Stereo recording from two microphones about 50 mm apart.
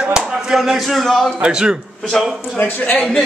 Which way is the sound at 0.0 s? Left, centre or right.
Centre.